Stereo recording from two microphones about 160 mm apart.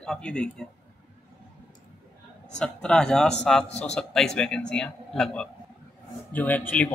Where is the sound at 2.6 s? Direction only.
5° left (ahead or behind).